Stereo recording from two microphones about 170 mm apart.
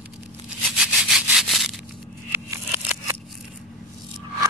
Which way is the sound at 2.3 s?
10° right (ahead or behind).